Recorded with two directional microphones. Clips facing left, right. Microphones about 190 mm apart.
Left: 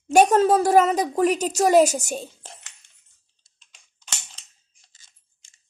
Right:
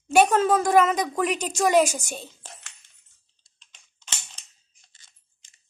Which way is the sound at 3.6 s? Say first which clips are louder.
Even; 10° left (ahead or behind).